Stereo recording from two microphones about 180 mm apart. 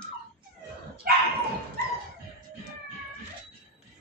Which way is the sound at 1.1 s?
55° right (ahead or behind).